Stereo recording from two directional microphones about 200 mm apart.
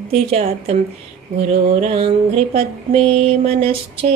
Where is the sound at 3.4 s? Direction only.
30° right (ahead or behind).